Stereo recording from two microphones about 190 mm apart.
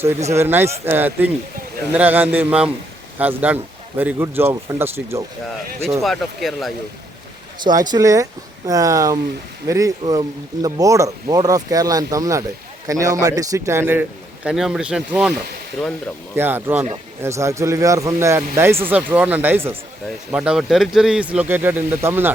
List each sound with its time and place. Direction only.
0.3 s speech: 10° right (ahead or behind)
6.0 s speech: centre (ahead or behind)
7.8 s speech: 20° right (ahead or behind)
16.3 s speech: 10° right (ahead or behind)